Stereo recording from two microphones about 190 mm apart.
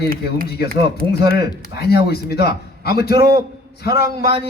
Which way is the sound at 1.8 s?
55° left (ahead or behind).